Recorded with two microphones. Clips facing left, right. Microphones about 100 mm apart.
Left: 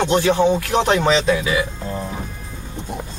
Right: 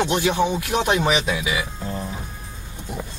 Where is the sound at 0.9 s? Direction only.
15° right (ahead or behind).